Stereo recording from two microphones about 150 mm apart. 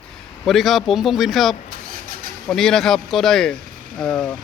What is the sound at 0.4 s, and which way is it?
Speech, centre (ahead or behind).